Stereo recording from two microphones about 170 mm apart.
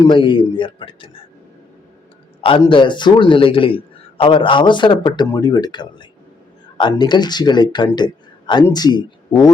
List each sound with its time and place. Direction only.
0.0 s speech: 30° left (ahead or behind)
2.4 s speech: 30° left (ahead or behind)